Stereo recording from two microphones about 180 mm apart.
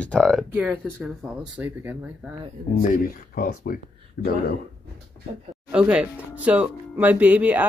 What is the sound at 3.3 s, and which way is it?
Speech, 50° left (ahead or behind).